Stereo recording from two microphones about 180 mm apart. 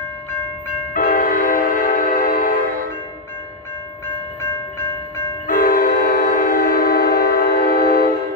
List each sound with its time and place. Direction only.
0.9 s train: 50° left (ahead or behind)
5.5 s train: 50° left (ahead or behind)